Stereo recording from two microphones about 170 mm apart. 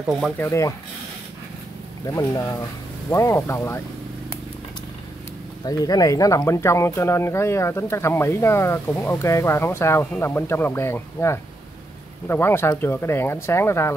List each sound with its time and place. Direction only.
0.4 s speech: 15° left (ahead or behind)
2.1 s speech: 20° left (ahead or behind)
5.7 s speech: 20° left (ahead or behind)